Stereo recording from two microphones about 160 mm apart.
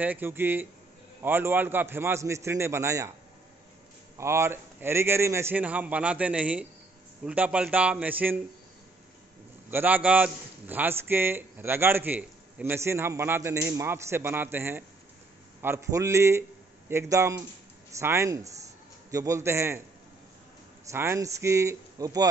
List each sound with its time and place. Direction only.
0.0 s a man's voice: 10° right (ahead or behind)
4.2 s a man's voice: 15° right (ahead or behind)
9.7 s a man's voice: 10° right (ahead or behind)
20.9 s speech: 15° right (ahead or behind)